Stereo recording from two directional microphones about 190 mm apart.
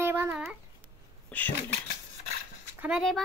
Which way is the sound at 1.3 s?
10° left (ahead or behind).